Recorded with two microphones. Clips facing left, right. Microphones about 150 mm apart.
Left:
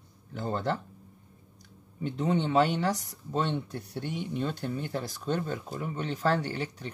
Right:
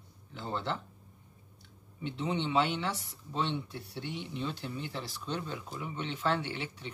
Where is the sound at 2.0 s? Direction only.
45° left (ahead or behind).